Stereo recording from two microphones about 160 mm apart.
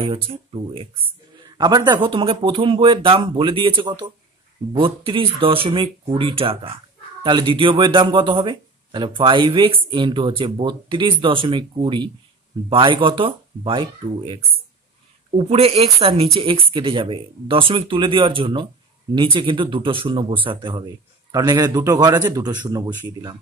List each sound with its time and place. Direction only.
0.0 s a man's voice: 35° right (ahead or behind)